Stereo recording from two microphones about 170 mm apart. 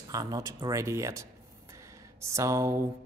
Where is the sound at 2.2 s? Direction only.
20° right (ahead or behind).